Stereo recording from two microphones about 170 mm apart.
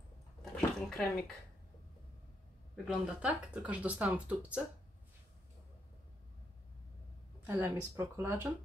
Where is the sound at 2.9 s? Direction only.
5° right (ahead or behind).